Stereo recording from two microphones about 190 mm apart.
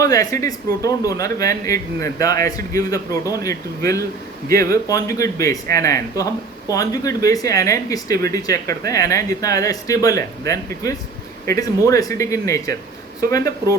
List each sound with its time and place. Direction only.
0.0 s speech: 20° left (ahead or behind)